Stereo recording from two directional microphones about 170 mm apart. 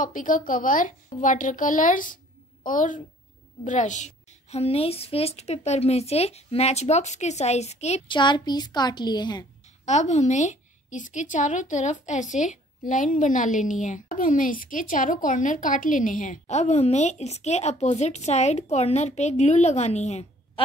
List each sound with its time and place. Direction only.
0.0 s a woman's voice: 50° left (ahead or behind)
8.2 s a woman's voice: 25° left (ahead or behind)
9.8 s a woman's voice: 40° left (ahead or behind)